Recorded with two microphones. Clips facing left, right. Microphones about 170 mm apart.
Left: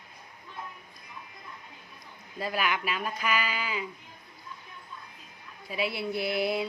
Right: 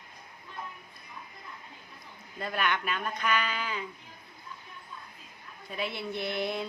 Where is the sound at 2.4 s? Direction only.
5° left (ahead or behind).